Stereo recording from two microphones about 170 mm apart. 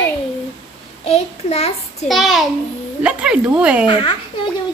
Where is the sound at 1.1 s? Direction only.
40° left (ahead or behind).